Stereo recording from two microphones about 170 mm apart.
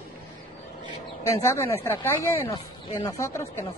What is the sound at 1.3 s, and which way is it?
Speech, 15° left (ahead or behind).